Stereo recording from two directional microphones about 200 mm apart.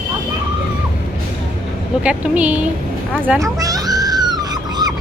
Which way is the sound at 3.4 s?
15° right (ahead or behind).